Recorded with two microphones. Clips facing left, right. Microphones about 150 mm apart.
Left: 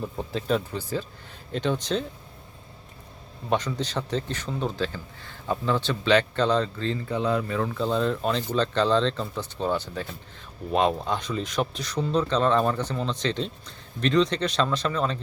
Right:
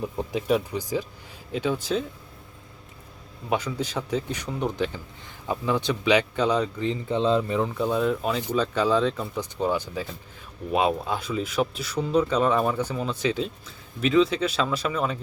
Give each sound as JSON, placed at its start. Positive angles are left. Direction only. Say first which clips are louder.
{"t": 0.0, "sound": "speech", "louder": "right 2 dB", "side_deg": -15}
{"t": 3.5, "sound": "speech", "louder": "even", "side_deg": -10}